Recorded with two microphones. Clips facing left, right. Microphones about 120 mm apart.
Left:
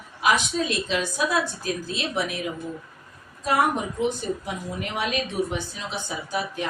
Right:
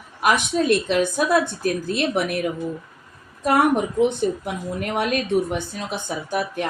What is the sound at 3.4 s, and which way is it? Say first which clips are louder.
A woman's voice: right 5 dB; 60° right (ahead or behind).